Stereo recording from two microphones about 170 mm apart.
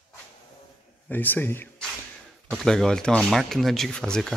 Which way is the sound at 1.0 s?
10° left (ahead or behind).